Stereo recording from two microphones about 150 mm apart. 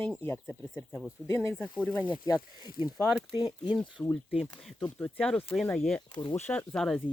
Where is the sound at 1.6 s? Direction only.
10° left (ahead or behind).